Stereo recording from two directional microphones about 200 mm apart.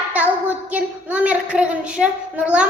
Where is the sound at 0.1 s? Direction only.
5° right (ahead or behind).